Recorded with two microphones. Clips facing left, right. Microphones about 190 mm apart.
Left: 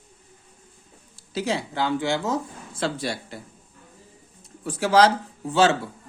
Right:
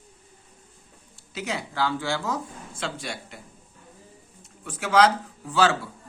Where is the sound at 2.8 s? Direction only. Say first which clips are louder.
Left 6 dB; 35° left (ahead or behind).